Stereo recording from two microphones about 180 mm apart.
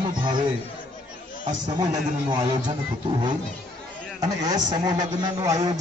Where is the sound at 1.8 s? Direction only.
25° right (ahead or behind).